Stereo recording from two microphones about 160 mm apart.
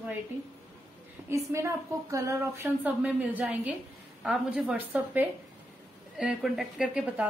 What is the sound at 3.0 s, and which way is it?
Speech, 10° right (ahead or behind).